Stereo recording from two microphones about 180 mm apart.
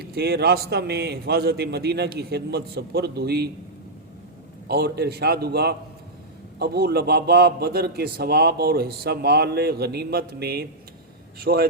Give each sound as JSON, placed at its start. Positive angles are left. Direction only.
{"t": 0.0, "sound": "a man's voice", "side_deg": -60}
{"t": 4.7, "sound": "a man's voice", "side_deg": -60}